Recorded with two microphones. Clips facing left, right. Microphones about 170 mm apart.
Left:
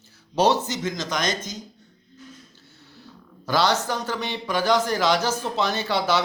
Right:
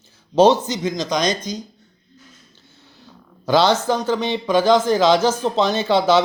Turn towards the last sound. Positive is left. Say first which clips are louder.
# right 7 dB
turn(degrees=-25)  # may be behind; listen again after turning